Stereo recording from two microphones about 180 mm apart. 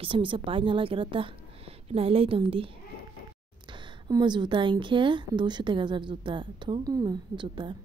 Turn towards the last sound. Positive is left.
turn(degrees=-25)  # may be behind; listen again after turning